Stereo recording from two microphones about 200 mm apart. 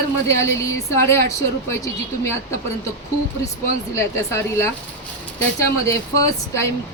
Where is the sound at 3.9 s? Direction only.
15° left (ahead or behind).